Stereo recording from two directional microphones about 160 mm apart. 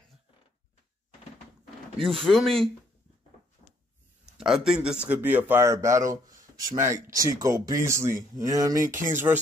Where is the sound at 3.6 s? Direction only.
40° left (ahead or behind).